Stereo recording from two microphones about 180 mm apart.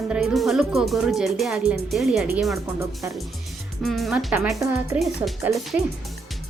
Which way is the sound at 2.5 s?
15° right (ahead or behind).